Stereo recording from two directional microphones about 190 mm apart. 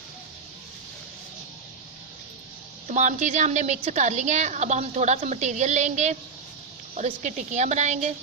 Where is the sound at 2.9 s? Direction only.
40° right (ahead or behind).